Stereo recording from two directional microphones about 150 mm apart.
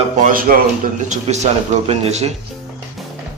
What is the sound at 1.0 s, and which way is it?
A man's voice, 50° right (ahead or behind).